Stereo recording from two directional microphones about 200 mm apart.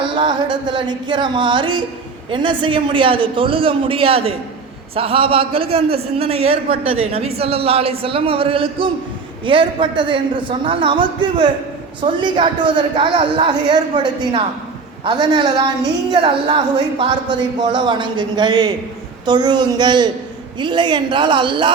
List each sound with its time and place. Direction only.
0.2 s a man's voice: 20° right (ahead or behind)